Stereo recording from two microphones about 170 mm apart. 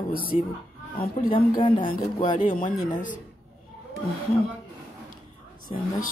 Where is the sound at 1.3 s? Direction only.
30° left (ahead or behind).